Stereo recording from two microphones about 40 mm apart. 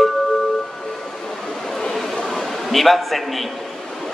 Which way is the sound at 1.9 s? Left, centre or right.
Centre.